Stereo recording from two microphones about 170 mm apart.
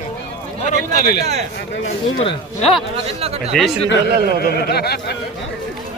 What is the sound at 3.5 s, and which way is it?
Speech, centre (ahead or behind).